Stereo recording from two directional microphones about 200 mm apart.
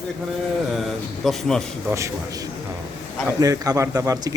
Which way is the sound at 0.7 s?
Centre (ahead or behind).